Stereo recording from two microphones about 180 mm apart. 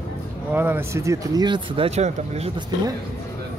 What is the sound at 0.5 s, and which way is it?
Speech, 10° right (ahead or behind).